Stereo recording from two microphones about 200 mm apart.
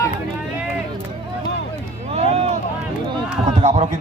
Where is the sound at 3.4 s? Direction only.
35° right (ahead or behind).